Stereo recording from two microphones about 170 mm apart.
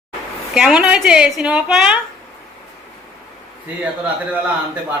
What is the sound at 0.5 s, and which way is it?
Speech, 5° right (ahead or behind).